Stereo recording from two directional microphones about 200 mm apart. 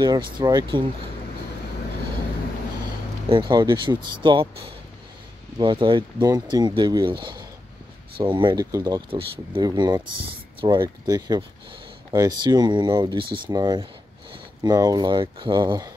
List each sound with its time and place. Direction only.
0.0 s speech: 20° right (ahead or behind)
3.3 s speech: 25° right (ahead or behind)
5.6 s speech: 25° right (ahead or behind)